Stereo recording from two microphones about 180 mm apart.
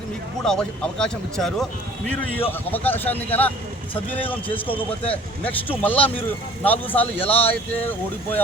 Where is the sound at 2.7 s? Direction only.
10° left (ahead or behind).